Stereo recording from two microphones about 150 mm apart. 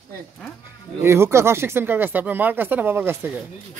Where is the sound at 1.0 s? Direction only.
15° right (ahead or behind).